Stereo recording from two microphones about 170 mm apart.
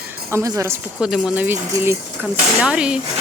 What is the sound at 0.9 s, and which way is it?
Speech, 5° right (ahead or behind).